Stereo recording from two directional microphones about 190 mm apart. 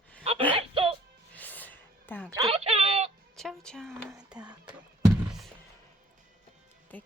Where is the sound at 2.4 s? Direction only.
30° right (ahead or behind).